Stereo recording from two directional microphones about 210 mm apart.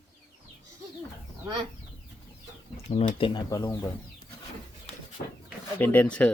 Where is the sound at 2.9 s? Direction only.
25° left (ahead or behind).